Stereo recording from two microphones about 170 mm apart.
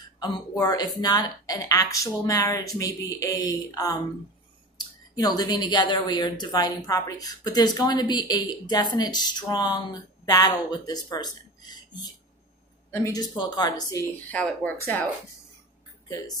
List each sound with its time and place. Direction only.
0.2 s speech: 25° left (ahead or behind)
11.7 s a sound: 25° left (ahead or behind)
12.9 s speech: 20° left (ahead or behind)
14.1 s speech: 10° left (ahead or behind)